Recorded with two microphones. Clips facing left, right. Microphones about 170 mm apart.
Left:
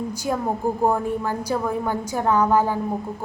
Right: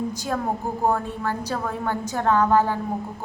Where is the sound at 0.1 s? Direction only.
10° left (ahead or behind).